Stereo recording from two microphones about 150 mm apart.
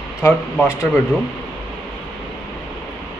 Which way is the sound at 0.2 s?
20° left (ahead or behind).